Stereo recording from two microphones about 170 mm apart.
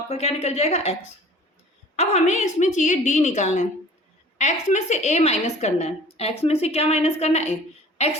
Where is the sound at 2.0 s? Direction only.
40° left (ahead or behind).